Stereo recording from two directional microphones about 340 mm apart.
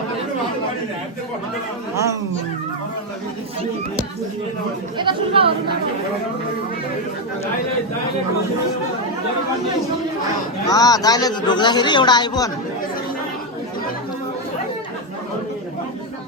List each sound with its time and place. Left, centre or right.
4.9 s speech: centre
10.7 s a man's voice: centre